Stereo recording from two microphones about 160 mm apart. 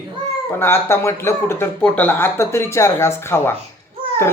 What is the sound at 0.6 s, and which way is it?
Speech, 15° left (ahead or behind).